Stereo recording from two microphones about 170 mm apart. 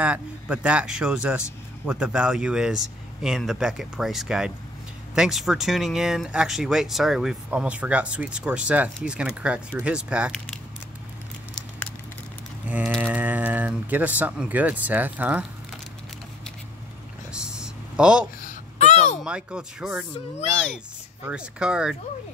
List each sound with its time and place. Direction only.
0.0 s speech: 5° right (ahead or behind)
12.6 s ratchet: 10° right (ahead or behind)
13.0 s speech: 10° right (ahead or behind)
17.3 s a sound: 5° right (ahead or behind)
18.4 s babbling: 45° left (ahead or behind)
19.2 s speech: 5° right (ahead or behind)
21.3 s speech: 5° right (ahead or behind)